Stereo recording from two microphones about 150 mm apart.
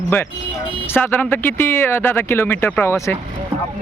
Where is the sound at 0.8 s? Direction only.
15° left (ahead or behind).